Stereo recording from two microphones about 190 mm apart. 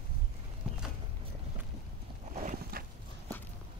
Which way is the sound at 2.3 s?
40° right (ahead or behind).